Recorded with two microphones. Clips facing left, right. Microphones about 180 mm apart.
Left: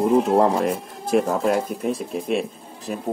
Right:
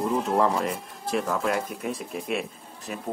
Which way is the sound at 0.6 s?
50° left (ahead or behind).